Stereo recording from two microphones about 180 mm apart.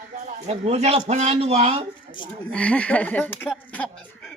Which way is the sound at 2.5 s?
5° left (ahead or behind).